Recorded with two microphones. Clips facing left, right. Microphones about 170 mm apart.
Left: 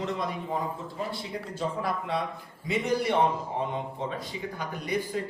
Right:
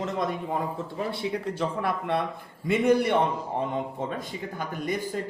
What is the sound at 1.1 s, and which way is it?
Speech, 65° right (ahead or behind).